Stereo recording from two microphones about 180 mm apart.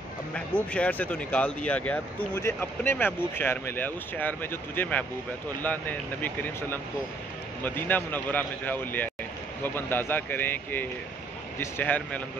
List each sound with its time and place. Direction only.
0.3 s speech: 5° left (ahead or behind)